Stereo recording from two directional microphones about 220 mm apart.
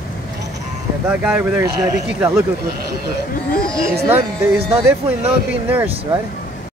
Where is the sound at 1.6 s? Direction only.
15° right (ahead or behind).